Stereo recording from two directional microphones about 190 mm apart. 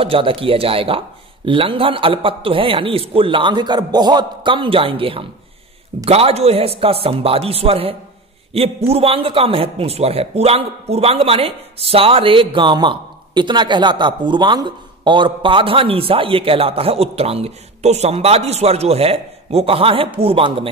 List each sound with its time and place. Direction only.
0.0 s a man's voice: 30° right (ahead or behind)